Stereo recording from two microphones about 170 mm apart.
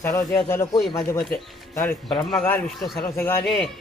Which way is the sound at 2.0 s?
5° left (ahead or behind).